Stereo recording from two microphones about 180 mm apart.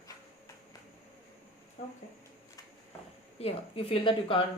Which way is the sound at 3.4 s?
30° left (ahead or behind).